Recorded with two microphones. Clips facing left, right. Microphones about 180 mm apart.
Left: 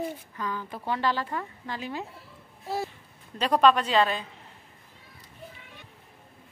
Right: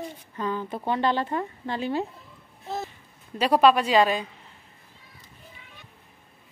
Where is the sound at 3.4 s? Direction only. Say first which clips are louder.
Right 2 dB; 10° right (ahead or behind).